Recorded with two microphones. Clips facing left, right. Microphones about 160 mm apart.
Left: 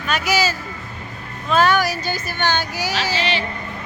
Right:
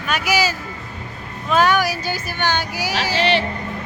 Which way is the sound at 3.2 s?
65° right (ahead or behind).